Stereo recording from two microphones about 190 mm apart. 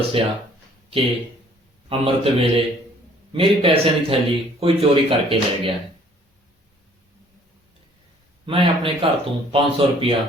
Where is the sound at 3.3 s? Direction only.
30° right (ahead or behind).